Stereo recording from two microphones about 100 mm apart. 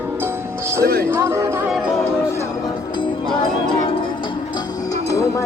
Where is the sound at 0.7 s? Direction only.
25° right (ahead or behind).